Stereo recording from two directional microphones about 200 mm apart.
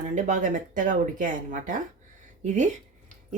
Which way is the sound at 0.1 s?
40° right (ahead or behind).